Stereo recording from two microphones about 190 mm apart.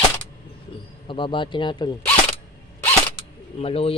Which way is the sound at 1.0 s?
25° left (ahead or behind).